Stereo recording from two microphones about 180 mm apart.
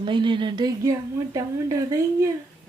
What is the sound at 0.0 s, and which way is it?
A woman's voice, 25° right (ahead or behind).